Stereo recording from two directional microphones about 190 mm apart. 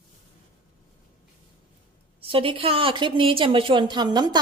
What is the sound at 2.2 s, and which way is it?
A woman's voice, 30° right (ahead or behind).